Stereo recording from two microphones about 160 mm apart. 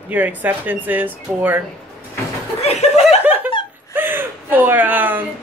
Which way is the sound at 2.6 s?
40° left (ahead or behind).